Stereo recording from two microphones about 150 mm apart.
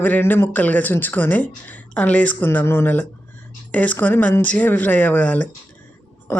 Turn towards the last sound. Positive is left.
turn(degrees=15)  # may be behind; listen again after turning